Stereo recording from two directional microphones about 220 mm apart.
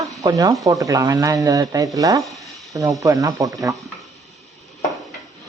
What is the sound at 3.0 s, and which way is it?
Speech, 15° right (ahead or behind).